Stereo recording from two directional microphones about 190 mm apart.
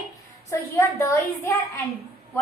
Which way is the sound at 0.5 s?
15° left (ahead or behind).